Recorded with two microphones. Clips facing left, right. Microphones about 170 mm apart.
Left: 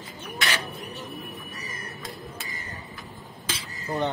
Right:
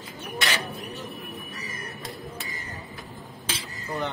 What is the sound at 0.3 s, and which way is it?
Bird, centre (ahead or behind).